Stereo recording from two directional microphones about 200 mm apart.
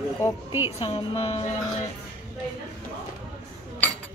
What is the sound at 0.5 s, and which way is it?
Speech, 15° right (ahead or behind).